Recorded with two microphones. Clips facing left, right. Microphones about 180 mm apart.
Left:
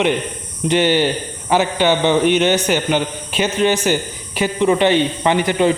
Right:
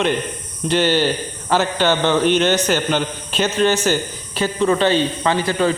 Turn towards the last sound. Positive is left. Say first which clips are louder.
# left 3 dB
turn(degrees=20)  # may be behind; listen again after turning